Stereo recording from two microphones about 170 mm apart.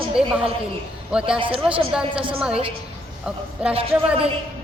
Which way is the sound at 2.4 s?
5° right (ahead or behind).